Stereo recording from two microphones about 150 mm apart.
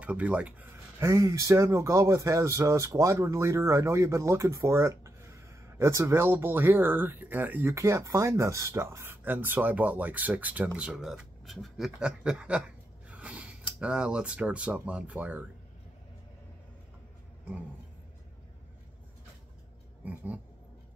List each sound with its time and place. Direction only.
0.0 s speech: 10° right (ahead or behind)
0.9 s speech: 20° right (ahead or behind)